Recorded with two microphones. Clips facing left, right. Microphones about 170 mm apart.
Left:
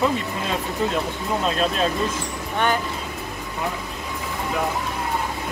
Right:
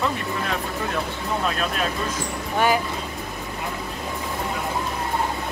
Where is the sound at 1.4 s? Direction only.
30° left (ahead or behind).